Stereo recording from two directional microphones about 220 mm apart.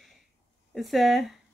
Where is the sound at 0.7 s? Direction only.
Centre (ahead or behind).